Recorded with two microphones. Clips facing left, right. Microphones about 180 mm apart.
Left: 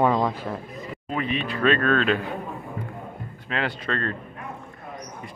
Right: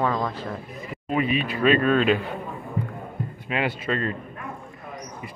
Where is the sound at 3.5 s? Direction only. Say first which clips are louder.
Right 2 dB; 10° right (ahead or behind).